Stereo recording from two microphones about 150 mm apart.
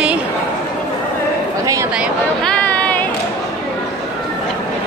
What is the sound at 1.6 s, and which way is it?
Speech, 20° right (ahead or behind).